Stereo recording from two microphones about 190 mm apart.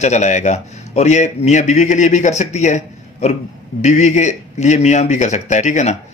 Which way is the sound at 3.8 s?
35° left (ahead or behind).